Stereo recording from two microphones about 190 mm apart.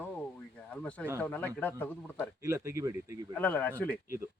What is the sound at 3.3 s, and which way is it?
Speech, 10° left (ahead or behind).